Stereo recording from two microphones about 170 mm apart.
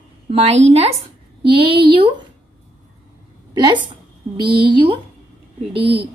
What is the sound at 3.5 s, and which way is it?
Speech, 25° right (ahead or behind).